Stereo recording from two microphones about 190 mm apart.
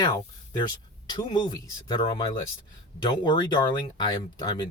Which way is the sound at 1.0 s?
25° left (ahead or behind).